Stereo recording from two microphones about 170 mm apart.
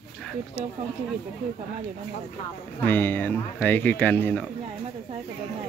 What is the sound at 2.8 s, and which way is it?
Speech, 10° left (ahead or behind).